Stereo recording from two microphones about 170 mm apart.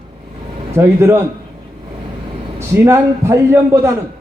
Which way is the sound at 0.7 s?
15° right (ahead or behind).